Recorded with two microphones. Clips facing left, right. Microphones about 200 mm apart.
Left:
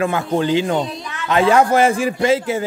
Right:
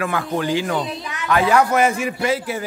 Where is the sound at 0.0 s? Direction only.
25° left (ahead or behind).